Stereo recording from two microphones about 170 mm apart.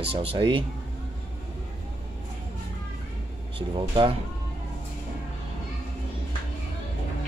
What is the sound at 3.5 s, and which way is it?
Speech, 30° right (ahead or behind).